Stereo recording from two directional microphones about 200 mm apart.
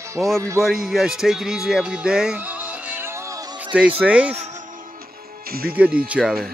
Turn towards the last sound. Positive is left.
turn(degrees=-5)  # may be behind; listen again after turning